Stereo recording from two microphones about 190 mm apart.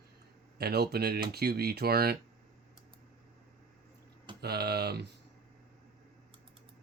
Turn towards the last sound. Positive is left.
turn(degrees=-60)  # may be behind; listen again after turning